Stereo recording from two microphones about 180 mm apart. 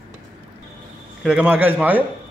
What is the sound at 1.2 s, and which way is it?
Speech, 5° right (ahead or behind).